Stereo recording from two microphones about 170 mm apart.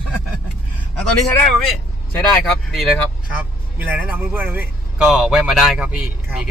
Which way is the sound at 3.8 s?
10° right (ahead or behind).